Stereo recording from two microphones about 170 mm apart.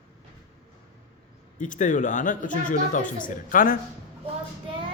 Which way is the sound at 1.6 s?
50° left (ahead or behind).